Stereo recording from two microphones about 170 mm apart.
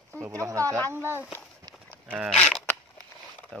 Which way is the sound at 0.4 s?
20° right (ahead or behind).